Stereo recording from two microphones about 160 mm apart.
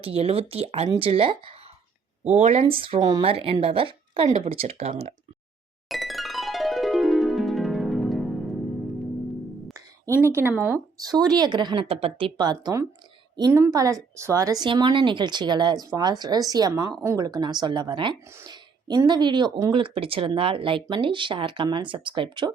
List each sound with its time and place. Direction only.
0.0 s speech: 40° right (ahead or behind)
5.9 s music: centre (ahead or behind)
10.1 s speech: 15° right (ahead or behind)
10.9 s a woman's voice: 25° right (ahead or behind)